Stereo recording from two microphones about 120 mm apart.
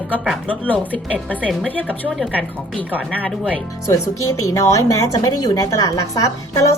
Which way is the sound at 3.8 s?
25° left (ahead or behind).